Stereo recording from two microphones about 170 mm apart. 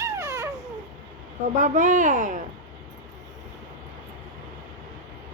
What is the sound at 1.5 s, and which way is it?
Speech, 50° right (ahead or behind).